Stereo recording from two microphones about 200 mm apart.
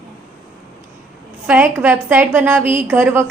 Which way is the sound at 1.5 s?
10° right (ahead or behind).